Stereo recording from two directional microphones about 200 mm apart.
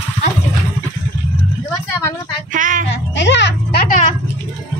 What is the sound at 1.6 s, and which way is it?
Speech, 10° left (ahead or behind).